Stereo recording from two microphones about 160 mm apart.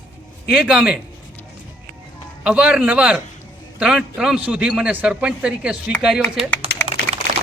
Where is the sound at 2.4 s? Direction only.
5° right (ahead or behind).